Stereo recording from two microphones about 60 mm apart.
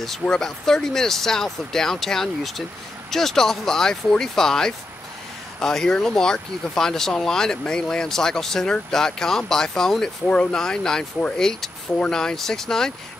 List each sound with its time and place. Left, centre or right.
0.2 s speech: centre
10.2 s speech: centre